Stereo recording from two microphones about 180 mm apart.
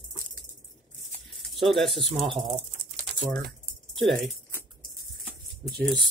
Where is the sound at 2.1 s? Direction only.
30° right (ahead or behind).